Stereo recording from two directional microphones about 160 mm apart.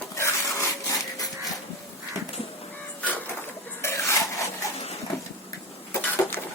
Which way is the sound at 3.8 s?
15° left (ahead or behind).